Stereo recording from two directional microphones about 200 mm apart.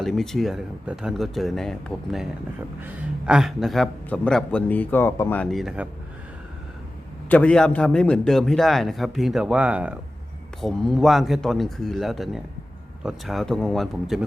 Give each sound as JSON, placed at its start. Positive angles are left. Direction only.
{"t": 0.0, "sound": "a man's voice", "side_deg": 0}
{"t": 7.3, "sound": "a man's voice", "side_deg": 5}